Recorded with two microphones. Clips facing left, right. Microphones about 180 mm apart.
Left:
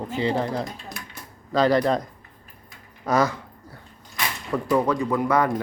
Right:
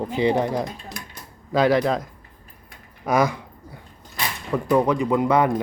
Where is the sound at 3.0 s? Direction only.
10° right (ahead or behind).